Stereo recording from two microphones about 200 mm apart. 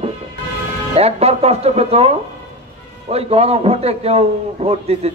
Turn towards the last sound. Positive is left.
turn(degrees=-30)  # may be behind; listen again after turning